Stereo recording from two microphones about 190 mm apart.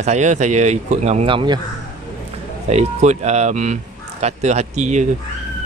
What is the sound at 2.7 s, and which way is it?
Speech, 35° right (ahead or behind).